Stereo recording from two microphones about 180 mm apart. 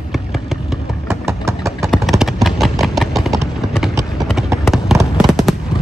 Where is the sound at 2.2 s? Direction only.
Centre (ahead or behind).